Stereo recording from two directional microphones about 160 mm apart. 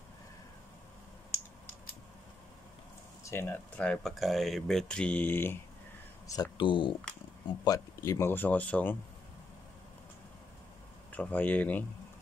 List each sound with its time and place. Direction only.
3.3 s speech: 15° left (ahead or behind)
6.2 s speech: 25° left (ahead or behind)
7.6 s speech: 20° left (ahead or behind)
11.1 s speech: 10° left (ahead or behind)